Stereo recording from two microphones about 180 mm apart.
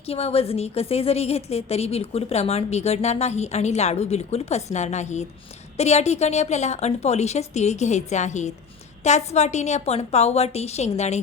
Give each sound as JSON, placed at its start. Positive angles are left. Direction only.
{"t": 0.0, "sound": "a woman's voice", "side_deg": 35}